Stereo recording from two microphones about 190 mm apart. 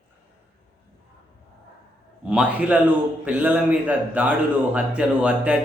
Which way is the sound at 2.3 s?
5° right (ahead or behind).